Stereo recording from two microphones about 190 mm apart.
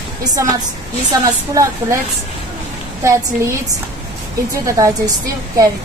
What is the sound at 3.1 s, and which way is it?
Speech, 15° right (ahead or behind).